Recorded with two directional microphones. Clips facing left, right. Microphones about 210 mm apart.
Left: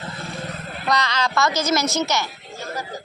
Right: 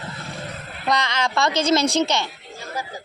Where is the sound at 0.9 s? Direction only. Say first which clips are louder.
Even; 25° right (ahead or behind).